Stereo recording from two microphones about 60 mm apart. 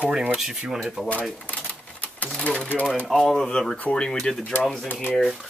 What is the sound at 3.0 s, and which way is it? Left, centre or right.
Speech, centre.